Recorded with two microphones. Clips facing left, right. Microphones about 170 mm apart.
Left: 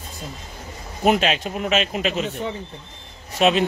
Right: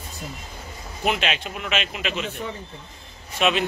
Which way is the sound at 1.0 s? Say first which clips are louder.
Left 6 dB; 40° left (ahead or behind).